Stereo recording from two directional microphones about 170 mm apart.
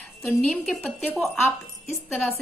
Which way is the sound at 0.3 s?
Centre (ahead or behind).